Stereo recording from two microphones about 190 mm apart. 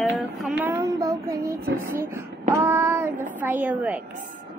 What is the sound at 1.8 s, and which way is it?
Speech, 10° right (ahead or behind).